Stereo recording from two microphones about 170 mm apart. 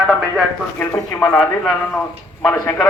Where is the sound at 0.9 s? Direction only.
15° left (ahead or behind).